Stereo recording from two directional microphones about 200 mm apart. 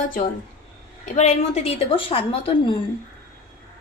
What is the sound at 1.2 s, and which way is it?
A woman's voice, 30° left (ahead or behind).